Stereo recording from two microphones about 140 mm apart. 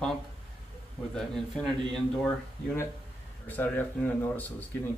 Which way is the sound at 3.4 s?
15° left (ahead or behind).